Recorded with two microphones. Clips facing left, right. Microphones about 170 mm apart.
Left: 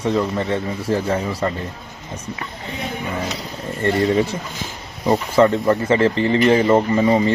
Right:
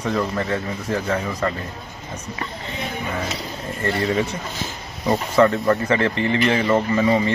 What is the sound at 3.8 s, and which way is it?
Speech, 30° left (ahead or behind).